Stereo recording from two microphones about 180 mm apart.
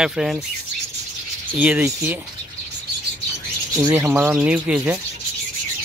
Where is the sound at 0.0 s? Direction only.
Centre (ahead or behind).